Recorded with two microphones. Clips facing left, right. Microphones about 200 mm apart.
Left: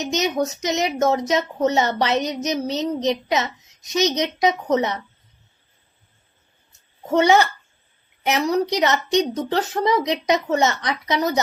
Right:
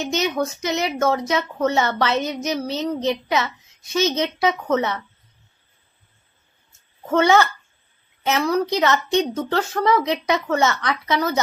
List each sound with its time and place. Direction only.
0.0 s a woman's voice: 20° left (ahead or behind)
7.1 s a woman's voice: 15° left (ahead or behind)